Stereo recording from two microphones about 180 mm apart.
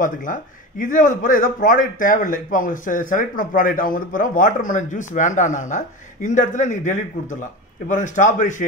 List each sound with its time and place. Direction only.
0.0 s a man's voice: 50° left (ahead or behind)